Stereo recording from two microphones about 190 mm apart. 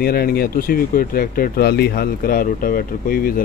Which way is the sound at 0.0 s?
55° left (ahead or behind).